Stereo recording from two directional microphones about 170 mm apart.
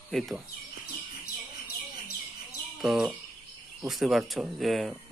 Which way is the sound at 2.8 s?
5° right (ahead or behind).